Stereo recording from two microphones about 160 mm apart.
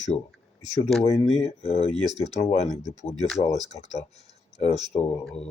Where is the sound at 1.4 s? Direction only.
40° left (ahead or behind).